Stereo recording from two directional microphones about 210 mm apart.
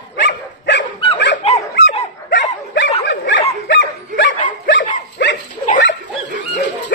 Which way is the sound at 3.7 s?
60° left (ahead or behind).